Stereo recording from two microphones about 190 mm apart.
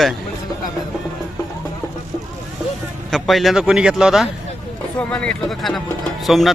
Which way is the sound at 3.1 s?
Centre (ahead or behind).